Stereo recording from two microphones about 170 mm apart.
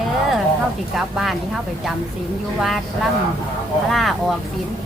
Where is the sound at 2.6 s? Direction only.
Centre (ahead or behind).